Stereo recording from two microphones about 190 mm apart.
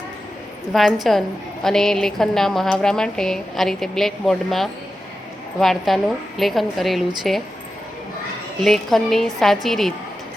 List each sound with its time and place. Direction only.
0.7 s a woman's voice: centre (ahead or behind)
8.6 s a woman's voice: centre (ahead or behind)